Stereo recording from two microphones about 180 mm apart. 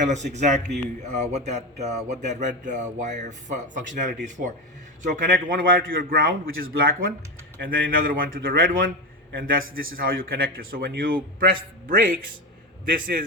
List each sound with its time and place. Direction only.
0.1 s a man's voice: 40° right (ahead or behind)